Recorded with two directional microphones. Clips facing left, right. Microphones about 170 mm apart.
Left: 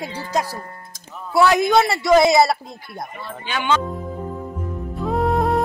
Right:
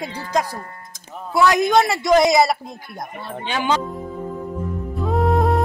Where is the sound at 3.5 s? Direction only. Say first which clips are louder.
Even; 30° right (ahead or behind).